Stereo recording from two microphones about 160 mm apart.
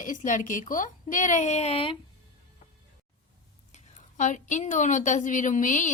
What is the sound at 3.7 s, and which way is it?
A woman's voice, 50° left (ahead or behind).